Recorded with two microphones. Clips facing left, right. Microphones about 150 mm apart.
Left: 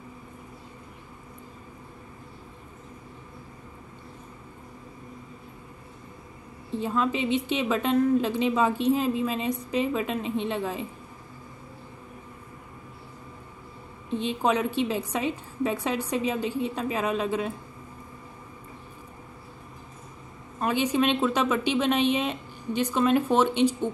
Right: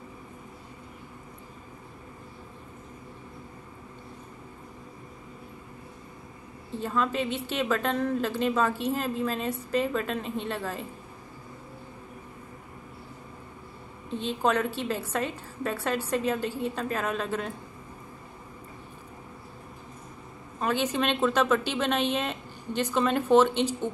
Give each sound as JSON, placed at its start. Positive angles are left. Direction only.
{"t": 6.8, "sound": "a woman's voice", "side_deg": 10}
{"t": 14.1, "sound": "a woman's voice", "side_deg": 15}
{"t": 20.6, "sound": "a woman's voice", "side_deg": 10}